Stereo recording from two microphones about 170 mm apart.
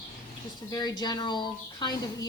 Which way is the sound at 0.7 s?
25° left (ahead or behind).